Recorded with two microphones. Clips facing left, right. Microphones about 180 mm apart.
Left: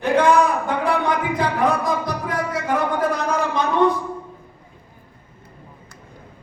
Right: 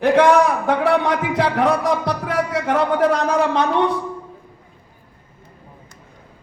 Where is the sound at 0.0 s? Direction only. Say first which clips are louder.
Right 3 dB; 75° right (ahead or behind).